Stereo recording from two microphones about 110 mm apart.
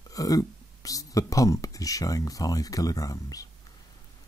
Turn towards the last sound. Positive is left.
turn(degrees=35)  # may be behind; listen again after turning